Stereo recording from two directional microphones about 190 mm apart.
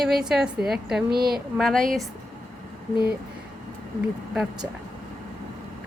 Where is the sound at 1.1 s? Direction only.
55° right (ahead or behind).